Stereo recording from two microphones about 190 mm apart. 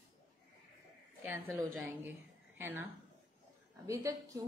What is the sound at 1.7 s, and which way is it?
A woman's voice, 5° right (ahead or behind).